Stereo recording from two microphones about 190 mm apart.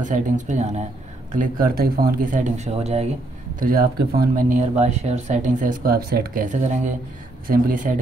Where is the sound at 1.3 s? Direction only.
50° right (ahead or behind).